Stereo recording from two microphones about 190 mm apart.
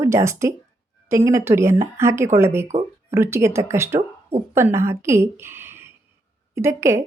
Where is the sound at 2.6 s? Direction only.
35° right (ahead or behind).